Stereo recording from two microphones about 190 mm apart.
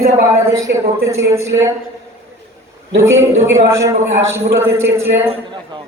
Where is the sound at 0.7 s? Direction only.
60° right (ahead or behind).